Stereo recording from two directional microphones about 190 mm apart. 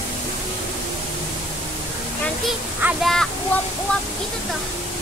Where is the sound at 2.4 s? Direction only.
Centre (ahead or behind).